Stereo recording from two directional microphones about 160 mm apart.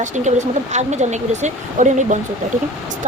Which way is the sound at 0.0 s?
50° right (ahead or behind).